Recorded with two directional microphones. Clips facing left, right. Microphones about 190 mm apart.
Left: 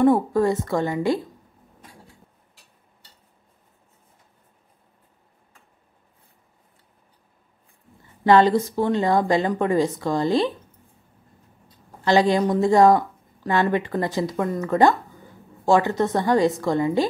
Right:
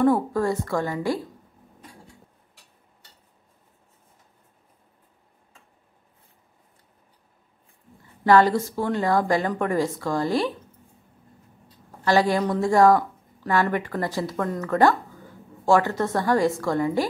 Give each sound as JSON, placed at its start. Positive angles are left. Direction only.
{"t": 0.0, "sound": "a woman's voice", "side_deg": 20}
{"t": 8.2, "sound": "a woman's voice", "side_deg": 20}
{"t": 12.0, "sound": "a woman's voice", "side_deg": 20}